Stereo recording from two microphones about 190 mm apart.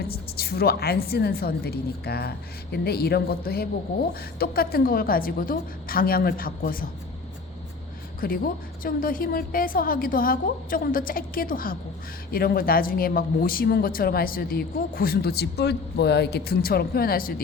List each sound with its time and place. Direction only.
0.0 s a woman's voice: 55° left (ahead or behind)
8.2 s speech: 50° left (ahead or behind)